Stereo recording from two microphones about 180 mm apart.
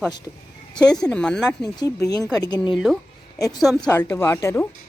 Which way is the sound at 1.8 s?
20° left (ahead or behind).